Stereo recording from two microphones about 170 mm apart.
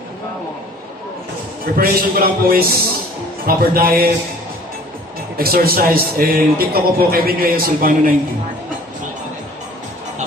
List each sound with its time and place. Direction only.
1.6 s a man's voice: 60° right (ahead or behind)
5.4 s a man's voice: 60° right (ahead or behind)